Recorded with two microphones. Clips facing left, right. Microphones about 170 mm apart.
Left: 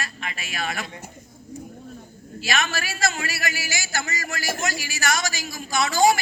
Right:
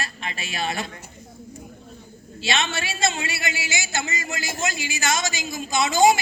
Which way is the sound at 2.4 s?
25° right (ahead or behind).